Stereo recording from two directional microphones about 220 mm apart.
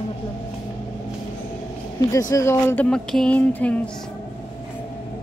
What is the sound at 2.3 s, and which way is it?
Speech, 15° left (ahead or behind).